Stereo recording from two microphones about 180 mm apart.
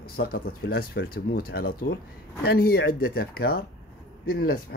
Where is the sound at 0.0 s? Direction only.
55° left (ahead or behind).